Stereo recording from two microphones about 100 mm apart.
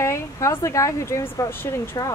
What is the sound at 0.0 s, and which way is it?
Speech, 30° left (ahead or behind).